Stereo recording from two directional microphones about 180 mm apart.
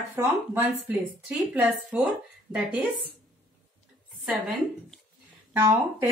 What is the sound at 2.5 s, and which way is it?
Speech, 10° right (ahead or behind).